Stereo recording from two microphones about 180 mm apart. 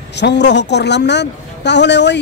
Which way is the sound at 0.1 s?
70° left (ahead or behind).